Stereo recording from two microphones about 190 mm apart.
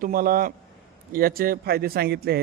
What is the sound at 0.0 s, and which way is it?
A man's voice, 50° right (ahead or behind).